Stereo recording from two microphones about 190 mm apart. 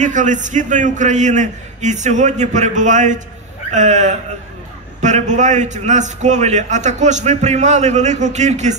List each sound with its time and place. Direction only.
0.0 s a man's voice: 40° right (ahead or behind)